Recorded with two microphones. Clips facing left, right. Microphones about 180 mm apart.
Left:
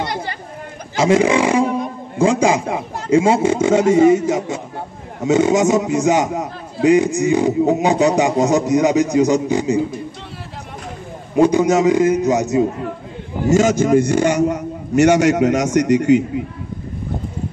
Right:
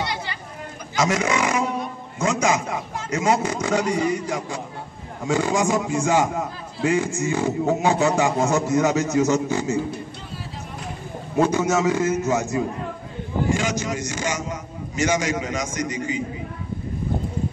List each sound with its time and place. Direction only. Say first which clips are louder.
0.0 s a sound: left 5 dB; 50° left (ahead or behind)
0.9 s a man's voice: left 8 dB; 30° left (ahead or behind)
5.2 s a man's voice: left 7 dB; 20° left (ahead or behind)
11.3 s a man's voice: left 6 dB; 15° left (ahead or behind)
13.5 s a man's voice: left 14 dB; 45° left (ahead or behind); by 16.4 s 70° left (ahead or behind)